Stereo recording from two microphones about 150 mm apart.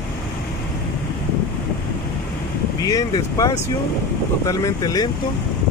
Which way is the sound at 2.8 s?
25° left (ahead or behind).